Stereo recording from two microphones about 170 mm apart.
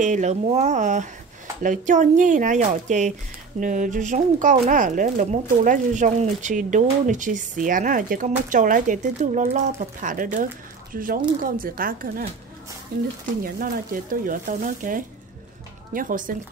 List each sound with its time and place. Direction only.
0.0 s speech: 45° right (ahead or behind)
13.4 s speech: 55° right (ahead or behind)